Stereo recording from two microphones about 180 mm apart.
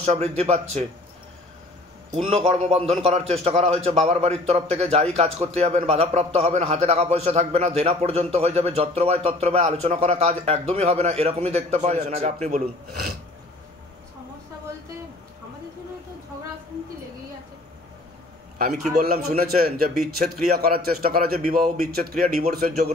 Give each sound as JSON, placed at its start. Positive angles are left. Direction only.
{"t": 0.0, "sound": "a man's voice", "side_deg": -35}
{"t": 2.1, "sound": "a man's voice", "side_deg": -35}
{"t": 18.9, "sound": "a man's voice", "side_deg": -60}